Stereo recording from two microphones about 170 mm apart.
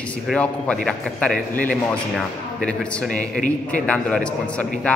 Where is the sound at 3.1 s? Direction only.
50° left (ahead or behind).